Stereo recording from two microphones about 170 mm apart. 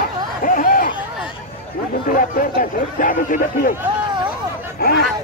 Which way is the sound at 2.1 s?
55° left (ahead or behind).